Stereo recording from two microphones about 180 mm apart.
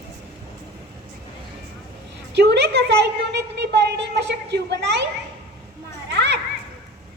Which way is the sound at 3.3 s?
70° right (ahead or behind).